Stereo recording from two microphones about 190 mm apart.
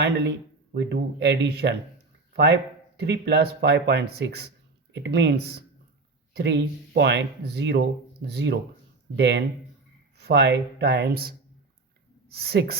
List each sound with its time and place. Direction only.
0.0 s speech: 60° right (ahead or behind)